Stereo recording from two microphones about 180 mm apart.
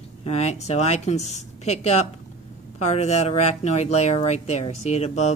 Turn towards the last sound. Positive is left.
turn(degrees=40)  # may be behind; listen again after turning